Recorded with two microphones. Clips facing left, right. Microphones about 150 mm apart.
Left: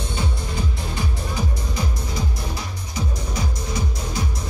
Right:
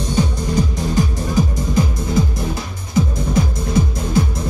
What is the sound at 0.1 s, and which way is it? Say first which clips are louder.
Music: right 13 dB; 40° right (ahead or behind).